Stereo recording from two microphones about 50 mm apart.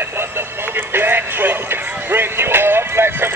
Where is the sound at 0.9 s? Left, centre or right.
Right.